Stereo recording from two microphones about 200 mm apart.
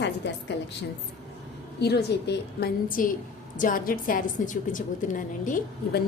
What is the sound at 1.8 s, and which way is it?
A woman's voice, 55° left (ahead or behind).